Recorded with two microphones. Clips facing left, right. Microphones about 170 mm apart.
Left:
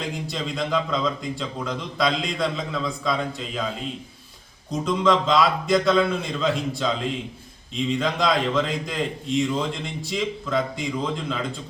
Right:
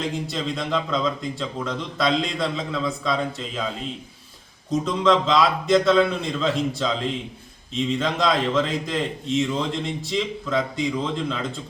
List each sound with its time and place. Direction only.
0.3 s a man's voice: centre (ahead or behind)
4.7 s a man's voice: centre (ahead or behind)
7.9 s a man's voice: centre (ahead or behind)